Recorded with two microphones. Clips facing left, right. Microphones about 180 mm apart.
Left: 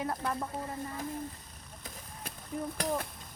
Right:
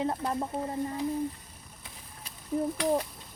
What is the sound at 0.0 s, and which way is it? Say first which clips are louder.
Speech: right 4 dB; 25° right (ahead or behind).